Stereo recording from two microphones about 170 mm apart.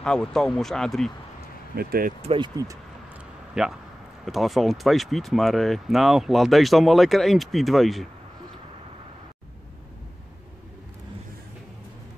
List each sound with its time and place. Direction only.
0.0 s speech: 5° left (ahead or behind)
1.8 s speech: 60° right (ahead or behind)
2.2 s speech: 30° right (ahead or behind)
3.6 s speech: 5° right (ahead or behind)